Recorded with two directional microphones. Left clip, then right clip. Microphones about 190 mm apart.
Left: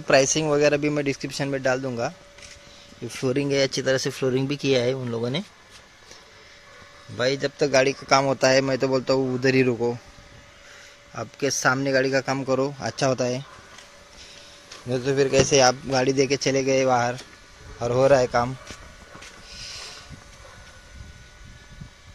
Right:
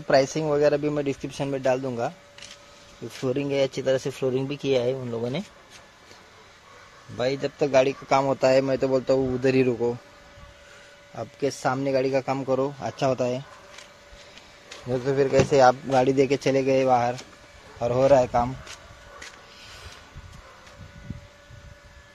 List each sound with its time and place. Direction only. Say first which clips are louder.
0.0 s speech: left 2 dB; centre (ahead or behind)
3.2 s speech: left 2 dB; 5° left (ahead or behind)
7.2 s speech: left 2 dB; centre (ahead or behind)
11.1 s speech: left 2 dB; 5° left (ahead or behind)
14.9 s speech: left 1 dB; 5° right (ahead or behind)